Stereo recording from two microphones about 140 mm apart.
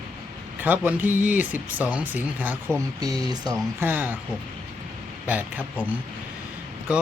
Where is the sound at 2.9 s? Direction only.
30° right (ahead or behind).